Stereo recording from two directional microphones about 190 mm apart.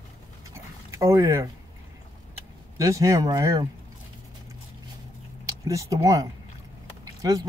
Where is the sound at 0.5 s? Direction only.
15° right (ahead or behind).